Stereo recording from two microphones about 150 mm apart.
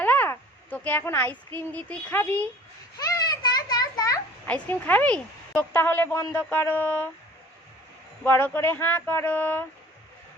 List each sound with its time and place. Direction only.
0.0 s a woman's voice: 10° left (ahead or behind)
3.0 s a sound: 25° left (ahead or behind)
4.4 s a woman's voice: 10° left (ahead or behind)
8.2 s a woman's voice: 15° left (ahead or behind)